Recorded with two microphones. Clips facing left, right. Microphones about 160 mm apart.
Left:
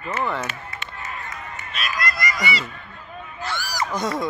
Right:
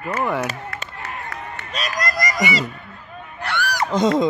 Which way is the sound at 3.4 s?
65° right (ahead or behind).